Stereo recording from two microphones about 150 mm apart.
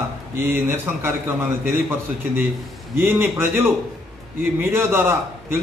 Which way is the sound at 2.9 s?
15° right (ahead or behind).